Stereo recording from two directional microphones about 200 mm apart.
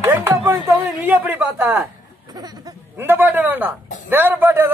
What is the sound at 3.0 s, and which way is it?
A man's voice, 10° right (ahead or behind).